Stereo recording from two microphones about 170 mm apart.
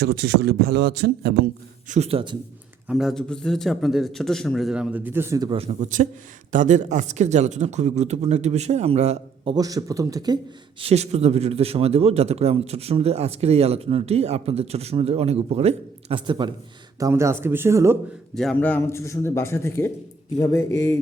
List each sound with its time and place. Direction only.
0.0 s speech: 75° right (ahead or behind)
1.9 s a man's voice: 35° right (ahead or behind)
2.8 s speech: centre (ahead or behind)
5.5 s a man's voice: 35° right (ahead or behind); by 10.3 s 20° right (ahead or behind)
10.8 s a man's voice: 35° right (ahead or behind)
17.0 s speech: 15° right (ahead or behind)
18.3 s a man's voice: 5° left (ahead or behind)